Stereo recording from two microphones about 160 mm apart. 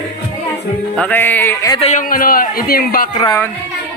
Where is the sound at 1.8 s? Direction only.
55° left (ahead or behind).